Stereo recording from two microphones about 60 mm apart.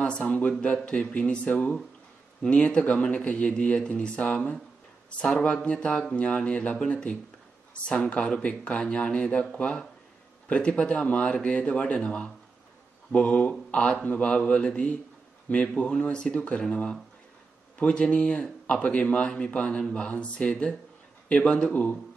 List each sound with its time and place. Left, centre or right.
0.0 s speech: centre